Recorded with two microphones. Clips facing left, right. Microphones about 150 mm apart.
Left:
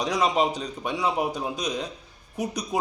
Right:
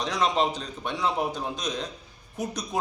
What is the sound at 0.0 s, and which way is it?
A man's voice, 10° left (ahead or behind).